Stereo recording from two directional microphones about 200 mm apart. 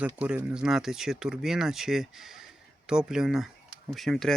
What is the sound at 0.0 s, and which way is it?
Speech, 5° right (ahead or behind).